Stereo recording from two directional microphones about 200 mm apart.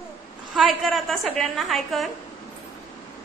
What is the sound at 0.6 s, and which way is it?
A man's voice, centre (ahead or behind).